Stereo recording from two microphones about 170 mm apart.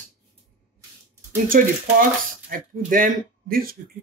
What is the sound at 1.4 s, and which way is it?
Speech, 55° right (ahead or behind).